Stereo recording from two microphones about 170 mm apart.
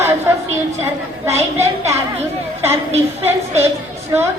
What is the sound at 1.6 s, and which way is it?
A woman's voice, 15° right (ahead or behind).